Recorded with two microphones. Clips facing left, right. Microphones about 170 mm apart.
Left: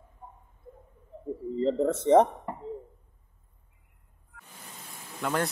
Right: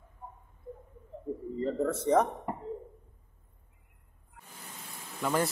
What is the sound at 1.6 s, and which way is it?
Speech, 25° left (ahead or behind).